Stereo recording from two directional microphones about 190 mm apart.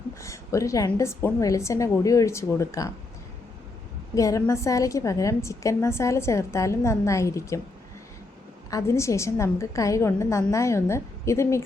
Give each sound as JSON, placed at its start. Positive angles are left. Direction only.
{"t": 0.2, "sound": "a woman's voice", "side_deg": 15}
{"t": 4.1, "sound": "a woman's voice", "side_deg": 15}
{"t": 8.7, "sound": "a woman's voice", "side_deg": 15}